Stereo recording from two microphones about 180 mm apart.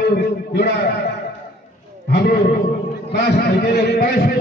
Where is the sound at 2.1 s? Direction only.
65° left (ahead or behind).